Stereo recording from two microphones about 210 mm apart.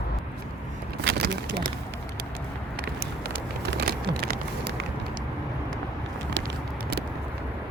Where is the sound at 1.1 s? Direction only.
55° right (ahead or behind).